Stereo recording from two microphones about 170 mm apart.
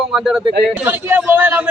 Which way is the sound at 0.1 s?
Centre (ahead or behind).